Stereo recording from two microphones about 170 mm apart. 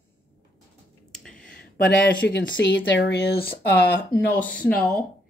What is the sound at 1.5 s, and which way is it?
Speech, 60° left (ahead or behind).